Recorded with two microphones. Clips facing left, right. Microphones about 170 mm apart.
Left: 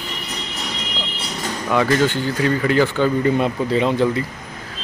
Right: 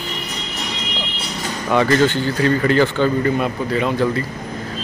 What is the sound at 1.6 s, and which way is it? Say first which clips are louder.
Speech: right 2 dB; 5° left (ahead or behind).